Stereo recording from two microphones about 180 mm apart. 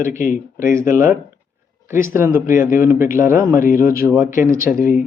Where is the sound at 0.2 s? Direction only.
45° left (ahead or behind).